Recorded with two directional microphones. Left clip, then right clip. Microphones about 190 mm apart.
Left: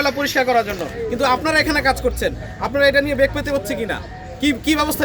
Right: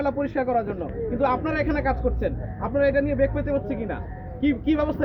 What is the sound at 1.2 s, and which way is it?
A man's voice, 55° left (ahead or behind).